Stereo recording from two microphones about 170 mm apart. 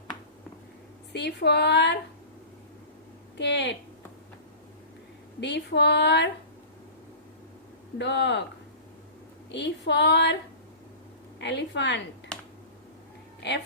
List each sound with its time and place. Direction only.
1.1 s speech: 80° left
3.3 s speech: 90° left
5.4 s speech: 90° left
7.9 s speech: 90° left
9.5 s speech: 90° left
11.3 s speech: 90° left